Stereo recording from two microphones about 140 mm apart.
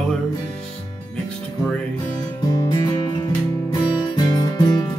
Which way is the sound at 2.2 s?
30° left (ahead or behind).